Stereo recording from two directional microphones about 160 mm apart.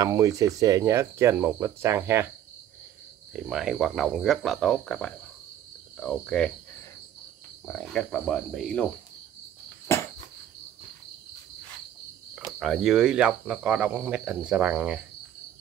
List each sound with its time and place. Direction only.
0.0 s speech: 20° right (ahead or behind)
3.4 s speech: 5° right (ahead or behind)
7.6 s speech: 5° left (ahead or behind)
9.9 s cricket: 15° left (ahead or behind)
12.4 s speech: centre (ahead or behind)